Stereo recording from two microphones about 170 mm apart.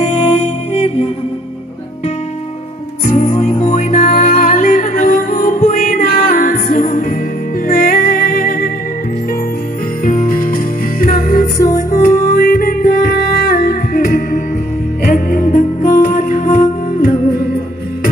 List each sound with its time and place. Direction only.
0.0 s music: 35° left (ahead or behind)
3.1 s music: 45° left (ahead or behind)
10.0 s jingle bell: 50° left (ahead or behind)
11.0 s music: 55° left (ahead or behind)